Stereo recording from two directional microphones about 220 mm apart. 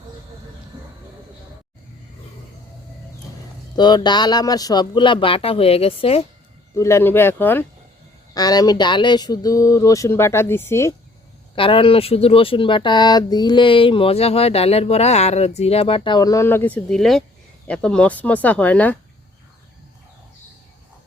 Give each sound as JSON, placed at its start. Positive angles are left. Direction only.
{"t": 3.8, "sound": "speech", "side_deg": 20}
{"t": 6.7, "sound": "speech", "side_deg": 10}
{"t": 11.5, "sound": "speech", "side_deg": 25}